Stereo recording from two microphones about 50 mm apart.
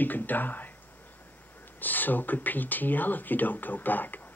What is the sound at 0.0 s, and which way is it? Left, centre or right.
Speech, left.